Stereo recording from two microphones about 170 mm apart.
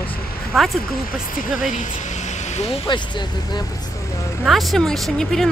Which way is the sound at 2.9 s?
25° left (ahead or behind).